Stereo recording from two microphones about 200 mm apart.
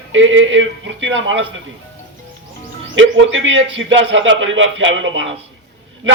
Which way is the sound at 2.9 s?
75° right (ahead or behind).